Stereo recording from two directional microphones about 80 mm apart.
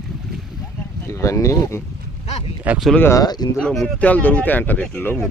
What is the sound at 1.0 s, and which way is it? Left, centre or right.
Speech, left.